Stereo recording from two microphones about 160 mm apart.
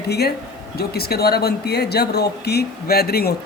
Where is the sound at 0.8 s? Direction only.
75° left (ahead or behind).